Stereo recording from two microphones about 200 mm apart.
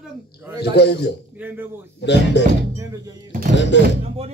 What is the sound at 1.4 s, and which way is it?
Speech, 10° right (ahead or behind).